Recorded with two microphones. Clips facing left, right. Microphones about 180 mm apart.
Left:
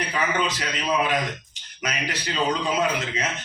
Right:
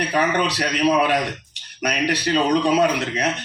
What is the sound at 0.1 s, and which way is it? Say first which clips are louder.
A man's voice: right 5 dB; 65° right (ahead or behind).